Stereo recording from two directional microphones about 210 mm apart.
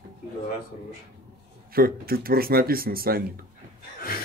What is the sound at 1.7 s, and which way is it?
Speech, 45° right (ahead or behind).